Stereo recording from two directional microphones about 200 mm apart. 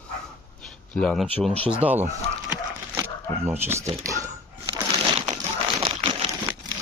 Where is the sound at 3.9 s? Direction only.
15° right (ahead or behind).